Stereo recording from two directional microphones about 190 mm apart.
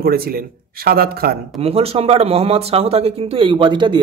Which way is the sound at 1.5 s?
30° right (ahead or behind).